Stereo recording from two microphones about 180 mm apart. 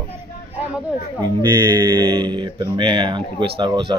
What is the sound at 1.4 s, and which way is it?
Speech, 25° right (ahead or behind).